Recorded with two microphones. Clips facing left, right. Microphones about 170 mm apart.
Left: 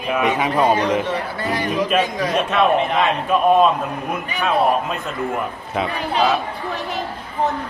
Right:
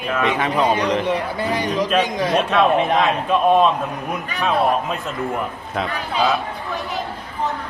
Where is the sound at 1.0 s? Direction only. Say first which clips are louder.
Right 2 dB; 15° right (ahead or behind).